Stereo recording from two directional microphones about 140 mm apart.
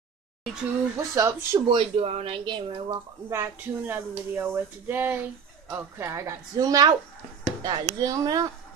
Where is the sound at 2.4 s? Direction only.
35° right (ahead or behind).